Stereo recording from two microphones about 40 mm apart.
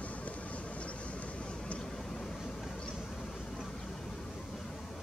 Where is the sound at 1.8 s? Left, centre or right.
Centre.